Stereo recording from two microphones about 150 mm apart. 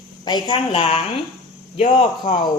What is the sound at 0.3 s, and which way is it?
A woman's voice, 30° left (ahead or behind).